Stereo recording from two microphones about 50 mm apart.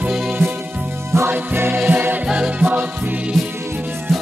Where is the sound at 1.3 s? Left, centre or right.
Right.